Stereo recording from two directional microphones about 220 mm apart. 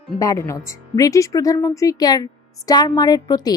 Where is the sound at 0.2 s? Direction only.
15° left (ahead or behind).